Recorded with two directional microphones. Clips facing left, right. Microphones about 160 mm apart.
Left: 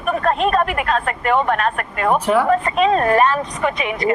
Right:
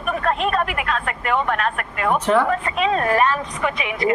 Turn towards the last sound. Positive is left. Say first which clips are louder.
# left 2 dB
turn(degrees=40)  # may be behind; listen again after turning